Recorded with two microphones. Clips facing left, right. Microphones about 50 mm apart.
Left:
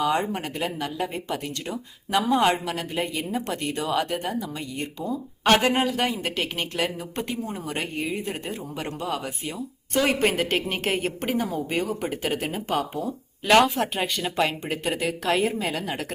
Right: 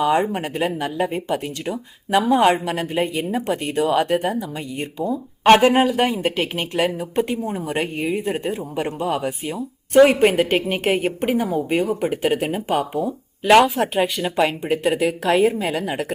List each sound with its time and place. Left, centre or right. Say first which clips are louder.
0.0 s a woman's voice: right 5 dB; centre
13.7 s speech: right 6 dB; centre